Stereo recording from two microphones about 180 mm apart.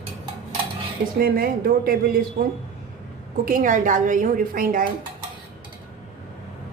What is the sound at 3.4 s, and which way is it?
A woman's voice, 50° right (ahead or behind).